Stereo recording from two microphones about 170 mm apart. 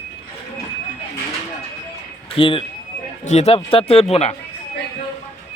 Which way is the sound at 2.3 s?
30° left (ahead or behind).